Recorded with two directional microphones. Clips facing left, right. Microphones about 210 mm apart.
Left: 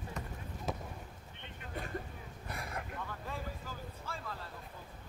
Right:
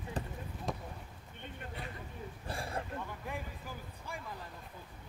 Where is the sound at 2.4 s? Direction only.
30° right (ahead or behind).